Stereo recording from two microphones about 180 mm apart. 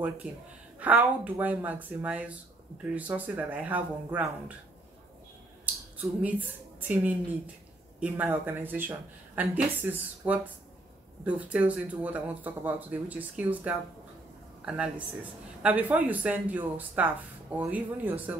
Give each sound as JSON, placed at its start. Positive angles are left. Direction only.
{"t": 0.2, "sound": "speech", "side_deg": -10}
{"t": 5.9, "sound": "a woman's voice", "side_deg": -10}